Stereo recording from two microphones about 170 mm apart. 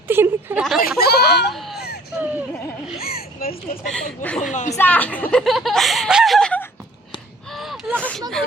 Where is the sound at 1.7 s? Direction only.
70° left (ahead or behind).